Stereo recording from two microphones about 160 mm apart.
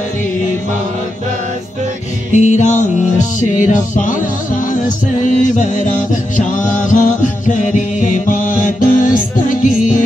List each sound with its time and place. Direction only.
2.3 s music: 50° left (ahead or behind)